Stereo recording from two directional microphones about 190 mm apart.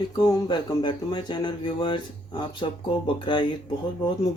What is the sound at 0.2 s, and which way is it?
Speech, 20° left (ahead or behind).